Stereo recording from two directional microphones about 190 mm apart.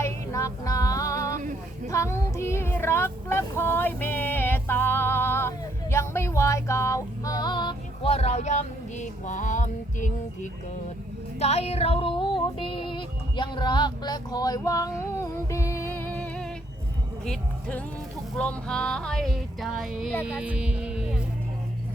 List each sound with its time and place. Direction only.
0.0 s music: 15° left (ahead or behind)
1.9 s female singing: 15° left (ahead or behind); by 10.5 s 40° left (ahead or behind)
11.3 s music: 35° left (ahead or behind); by 20.1 s centre (ahead or behind)
20.2 s speech: 5° right (ahead or behind)